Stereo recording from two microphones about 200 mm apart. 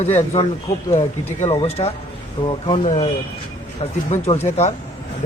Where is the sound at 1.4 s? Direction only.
30° left (ahead or behind).